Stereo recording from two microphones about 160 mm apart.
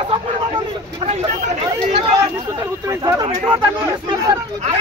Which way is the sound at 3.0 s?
25° right (ahead or behind).